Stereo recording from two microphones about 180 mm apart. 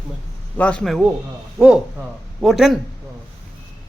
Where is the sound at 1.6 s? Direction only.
15° right (ahead or behind).